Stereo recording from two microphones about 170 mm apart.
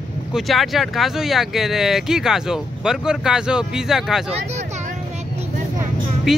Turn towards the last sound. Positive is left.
turn(degrees=-5)  # may be behind; listen again after turning